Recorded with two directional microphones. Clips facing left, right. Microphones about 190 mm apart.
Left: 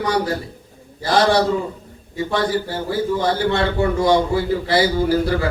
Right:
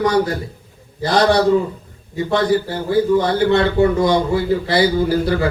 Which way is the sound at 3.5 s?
20° right (ahead or behind).